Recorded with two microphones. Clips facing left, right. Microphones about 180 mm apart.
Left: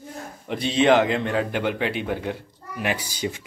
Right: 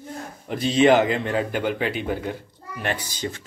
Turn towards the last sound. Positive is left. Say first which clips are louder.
# left 2 dB
turn(degrees=10)  # may be behind; listen again after turning